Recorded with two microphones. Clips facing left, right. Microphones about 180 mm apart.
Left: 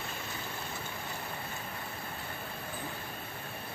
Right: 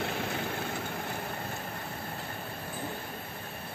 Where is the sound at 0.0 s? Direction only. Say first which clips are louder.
Right 8 dB; 70° right (ahead or behind).